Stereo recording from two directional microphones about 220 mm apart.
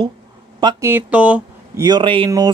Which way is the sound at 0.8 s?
5° right (ahead or behind).